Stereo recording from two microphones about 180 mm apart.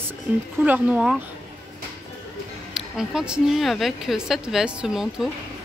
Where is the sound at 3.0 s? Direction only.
5° right (ahead or behind).